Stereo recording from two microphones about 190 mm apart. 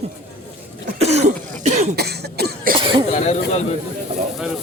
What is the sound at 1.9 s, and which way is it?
Cough, 60° right (ahead or behind).